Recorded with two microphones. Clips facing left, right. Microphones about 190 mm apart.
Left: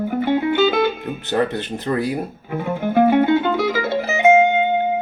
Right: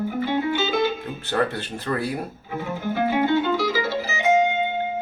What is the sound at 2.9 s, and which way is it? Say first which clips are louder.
Music: left 6 dB; 55° left (ahead or behind).